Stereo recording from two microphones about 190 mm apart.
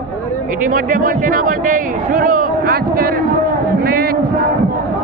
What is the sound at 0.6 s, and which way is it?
A man's voice, 45° right (ahead or behind).